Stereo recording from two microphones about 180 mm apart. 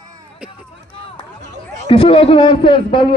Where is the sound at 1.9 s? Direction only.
30° left (ahead or behind).